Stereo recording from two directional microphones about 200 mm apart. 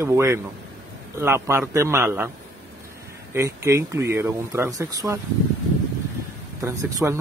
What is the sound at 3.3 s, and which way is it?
Speech, 15° right (ahead or behind).